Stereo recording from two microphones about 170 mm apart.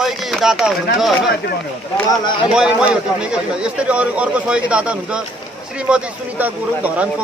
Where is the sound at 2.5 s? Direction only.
5° right (ahead or behind).